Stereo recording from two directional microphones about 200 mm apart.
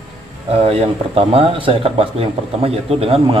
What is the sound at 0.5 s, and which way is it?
Speech, 30° right (ahead or behind).